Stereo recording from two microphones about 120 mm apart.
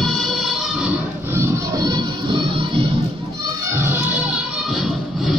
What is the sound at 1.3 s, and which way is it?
Music, 30° right (ahead or behind).